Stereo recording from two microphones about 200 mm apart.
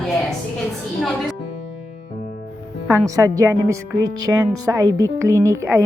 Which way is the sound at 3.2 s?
15° right (ahead or behind).